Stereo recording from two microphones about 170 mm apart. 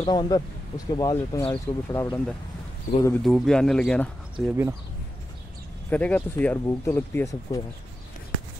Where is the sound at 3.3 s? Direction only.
Centre (ahead or behind).